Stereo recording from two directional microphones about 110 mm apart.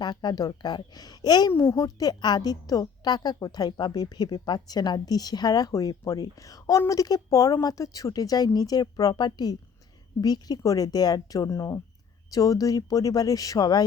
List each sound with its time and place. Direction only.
0.0 s a woman's voice: 40° left (ahead or behind)
1.5 s a woman's voice: 25° left (ahead or behind)